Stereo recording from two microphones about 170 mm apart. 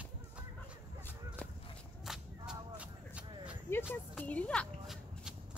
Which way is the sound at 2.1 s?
5° right (ahead or behind).